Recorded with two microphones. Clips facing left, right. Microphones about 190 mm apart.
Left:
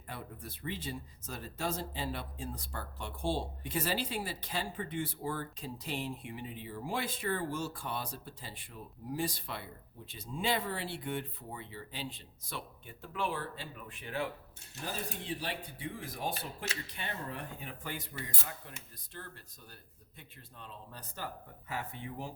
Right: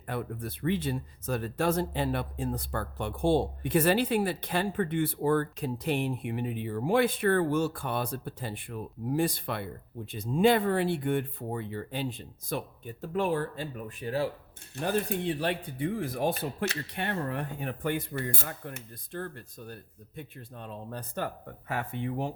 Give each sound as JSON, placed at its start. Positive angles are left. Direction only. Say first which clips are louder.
{"t": 0.1, "sound": "speech", "louder": "right 10 dB", "side_deg": -60}
{"t": 14.8, "sound": "speech", "louder": "right 11 dB", "side_deg": -60}